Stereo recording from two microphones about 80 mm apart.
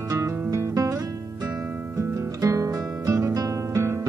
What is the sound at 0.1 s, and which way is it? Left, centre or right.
Music, right.